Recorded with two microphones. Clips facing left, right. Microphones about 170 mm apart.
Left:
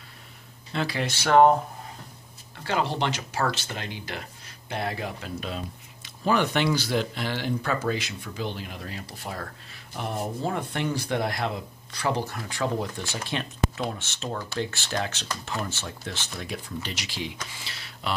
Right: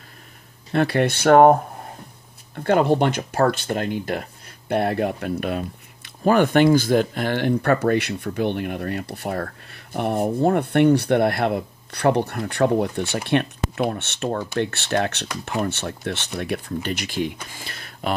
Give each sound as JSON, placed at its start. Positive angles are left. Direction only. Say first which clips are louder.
{"t": 0.7, "sound": "speech", "louder": "right 9 dB", "side_deg": -60}